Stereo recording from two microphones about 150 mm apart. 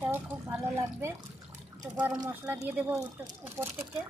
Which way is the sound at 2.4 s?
10° right (ahead or behind).